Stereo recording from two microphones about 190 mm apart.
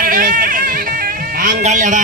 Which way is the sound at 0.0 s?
45° right (ahead or behind).